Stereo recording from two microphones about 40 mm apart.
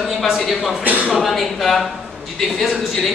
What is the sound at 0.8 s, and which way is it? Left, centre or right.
Speech, right.